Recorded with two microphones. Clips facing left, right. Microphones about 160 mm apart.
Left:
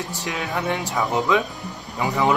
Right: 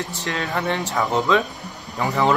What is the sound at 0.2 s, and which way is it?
Speech, 15° left (ahead or behind).